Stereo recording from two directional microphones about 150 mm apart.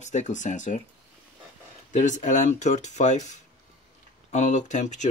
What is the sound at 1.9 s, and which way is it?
Speech, 55° left (ahead or behind).